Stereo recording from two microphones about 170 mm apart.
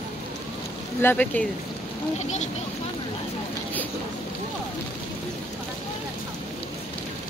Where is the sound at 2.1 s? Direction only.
45° left (ahead or behind).